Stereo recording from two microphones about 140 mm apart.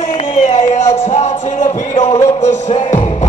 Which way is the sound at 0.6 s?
55° left (ahead or behind).